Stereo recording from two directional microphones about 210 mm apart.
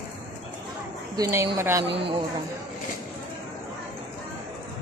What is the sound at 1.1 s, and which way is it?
Speech, 15° right (ahead or behind).